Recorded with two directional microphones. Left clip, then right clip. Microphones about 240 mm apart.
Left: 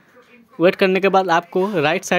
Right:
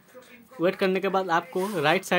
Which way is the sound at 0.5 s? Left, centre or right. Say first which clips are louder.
Left 9 dB; left.